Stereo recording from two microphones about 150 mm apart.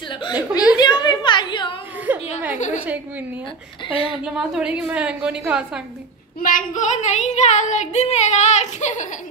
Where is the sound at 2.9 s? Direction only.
10° right (ahead or behind).